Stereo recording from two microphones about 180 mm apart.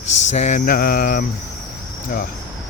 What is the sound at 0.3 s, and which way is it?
Speech, 40° left (ahead or behind).